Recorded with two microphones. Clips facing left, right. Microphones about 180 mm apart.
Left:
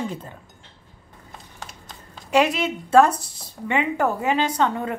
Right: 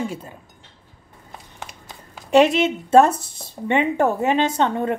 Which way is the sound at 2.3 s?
25° right (ahead or behind).